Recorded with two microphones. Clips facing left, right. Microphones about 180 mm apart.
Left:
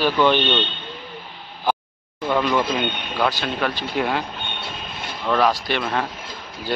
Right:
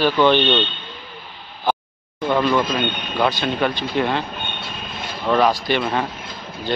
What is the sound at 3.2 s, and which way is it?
Speech, centre (ahead or behind).